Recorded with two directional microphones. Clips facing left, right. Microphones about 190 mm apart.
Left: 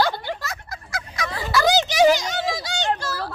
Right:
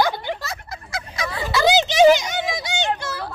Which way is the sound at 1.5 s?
20° right (ahead or behind).